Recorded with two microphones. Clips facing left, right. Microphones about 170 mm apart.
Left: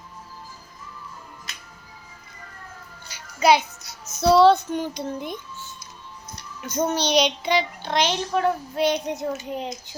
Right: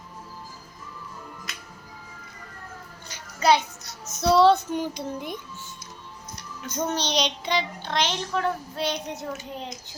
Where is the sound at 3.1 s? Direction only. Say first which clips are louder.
Left 2 dB; 10° left (ahead or behind); by 5.3 s 5° right (ahead or behind).